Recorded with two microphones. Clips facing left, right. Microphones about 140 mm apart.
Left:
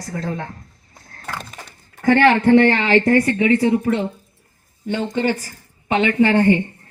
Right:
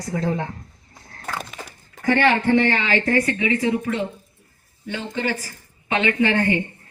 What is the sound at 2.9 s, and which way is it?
Speech, 45° left (ahead or behind).